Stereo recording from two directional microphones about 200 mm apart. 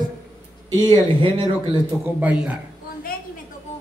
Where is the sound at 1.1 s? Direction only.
25° right (ahead or behind).